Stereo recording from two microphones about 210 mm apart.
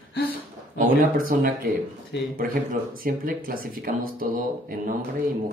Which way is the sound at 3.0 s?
40° right (ahead or behind).